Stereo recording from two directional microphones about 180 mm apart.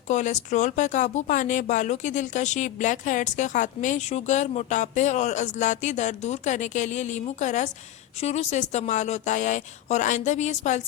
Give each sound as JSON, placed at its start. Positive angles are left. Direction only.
{"t": 0.1, "sound": "speech", "side_deg": 40}